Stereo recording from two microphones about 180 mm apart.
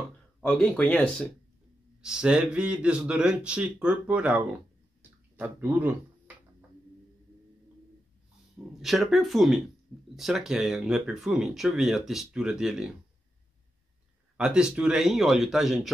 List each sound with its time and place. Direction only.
0.4 s speech: 5° left (ahead or behind)
2.0 s speech: 5° right (ahead or behind)
8.8 s speech: centre (ahead or behind)
14.3 s speech: 5° right (ahead or behind)